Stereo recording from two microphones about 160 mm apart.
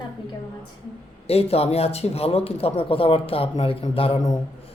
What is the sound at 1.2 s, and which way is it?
Speech, 40° left (ahead or behind).